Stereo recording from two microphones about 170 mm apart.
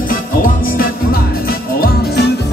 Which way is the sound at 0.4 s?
60° left (ahead or behind).